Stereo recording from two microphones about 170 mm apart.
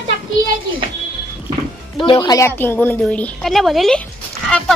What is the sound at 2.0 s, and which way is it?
Speech, 25° left (ahead or behind).